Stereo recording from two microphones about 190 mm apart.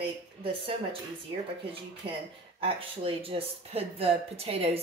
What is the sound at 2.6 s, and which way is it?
Speech, 30° right (ahead or behind).